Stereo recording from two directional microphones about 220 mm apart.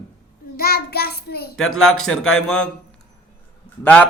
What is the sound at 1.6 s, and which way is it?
Speech, 70° left (ahead or behind).